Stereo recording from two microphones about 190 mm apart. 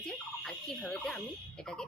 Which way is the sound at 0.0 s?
Centre (ahead or behind).